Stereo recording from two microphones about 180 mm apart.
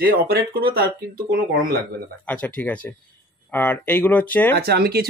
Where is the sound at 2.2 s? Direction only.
10° left (ahead or behind).